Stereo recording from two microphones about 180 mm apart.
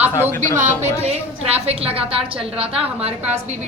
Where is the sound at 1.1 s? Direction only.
35° right (ahead or behind).